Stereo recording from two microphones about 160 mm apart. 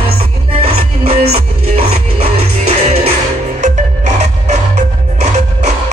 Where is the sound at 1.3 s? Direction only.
40° right (ahead or behind).